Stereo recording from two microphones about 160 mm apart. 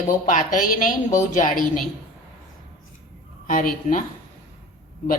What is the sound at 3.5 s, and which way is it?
Speech, 55° left (ahead or behind).